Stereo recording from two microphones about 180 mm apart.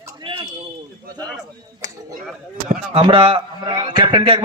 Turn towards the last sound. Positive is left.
turn(degrees=-30)  # may be behind; listen again after turning